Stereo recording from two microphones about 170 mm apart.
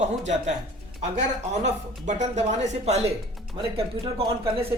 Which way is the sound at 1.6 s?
45° right (ahead or behind).